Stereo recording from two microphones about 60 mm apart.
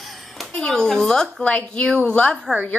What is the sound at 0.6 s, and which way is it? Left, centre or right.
Speech, centre.